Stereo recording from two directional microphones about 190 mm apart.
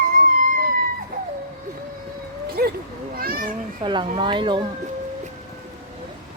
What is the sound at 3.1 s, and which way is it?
Children playing, 50° right (ahead or behind).